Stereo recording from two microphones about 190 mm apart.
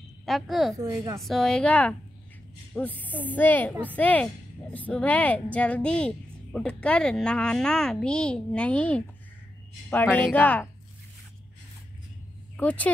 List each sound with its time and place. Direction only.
0.2 s a woman's voice: centre (ahead or behind)
0.7 s a woman's voice: 15° right (ahead or behind)
1.2 s speech: centre (ahead or behind)
12.5 s speech: 10° left (ahead or behind)